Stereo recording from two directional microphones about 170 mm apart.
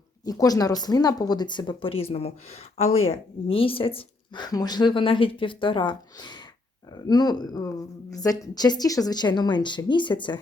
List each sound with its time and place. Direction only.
0.3 s speech: 20° left (ahead or behind)